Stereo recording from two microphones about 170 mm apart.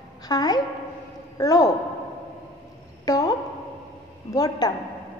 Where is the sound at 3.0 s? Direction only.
20° left (ahead or behind).